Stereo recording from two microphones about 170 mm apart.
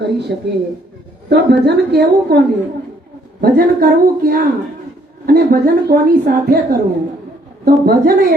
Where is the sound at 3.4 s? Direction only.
65° right (ahead or behind).